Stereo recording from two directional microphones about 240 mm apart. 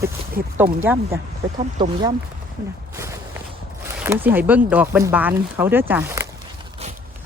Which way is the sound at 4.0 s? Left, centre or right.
Centre.